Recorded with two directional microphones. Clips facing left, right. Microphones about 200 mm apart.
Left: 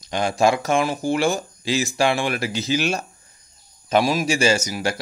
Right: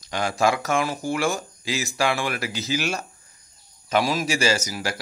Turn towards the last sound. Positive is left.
turn(degrees=20)  # may be behind; listen again after turning